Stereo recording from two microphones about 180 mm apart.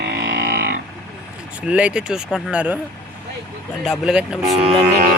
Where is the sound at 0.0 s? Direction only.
65° right (ahead or behind).